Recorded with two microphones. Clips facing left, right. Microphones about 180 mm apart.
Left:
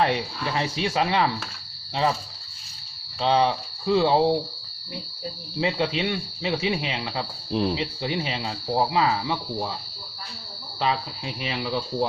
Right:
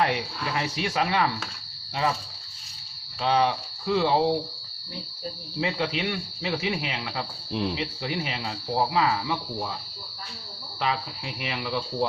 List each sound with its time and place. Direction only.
0.0 s speech: 30° left (ahead or behind)
3.2 s speech: 25° left (ahead or behind)
5.5 s speech: 25° left (ahead or behind)
7.5 s speech: 40° left (ahead or behind)
7.8 s speech: 25° left (ahead or behind)
11.4 s speech: 25° left (ahead or behind)